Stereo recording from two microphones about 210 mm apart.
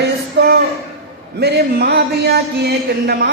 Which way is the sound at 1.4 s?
50° right (ahead or behind).